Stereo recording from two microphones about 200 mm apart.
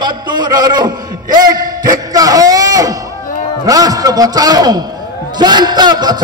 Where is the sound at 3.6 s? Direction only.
20° right (ahead or behind).